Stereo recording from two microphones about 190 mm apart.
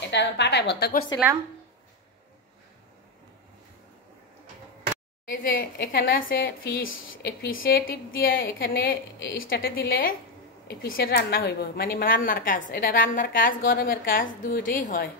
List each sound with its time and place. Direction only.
0.1 s a woman's voice: 65° left (ahead or behind)
5.3 s a woman's voice: 45° left (ahead or behind)
6.8 s a woman's voice: 90° left; by 15.0 s 45° left (ahead or behind)